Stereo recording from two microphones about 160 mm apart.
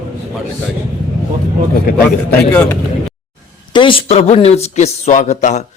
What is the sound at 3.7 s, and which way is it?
Speech, 30° left (ahead or behind).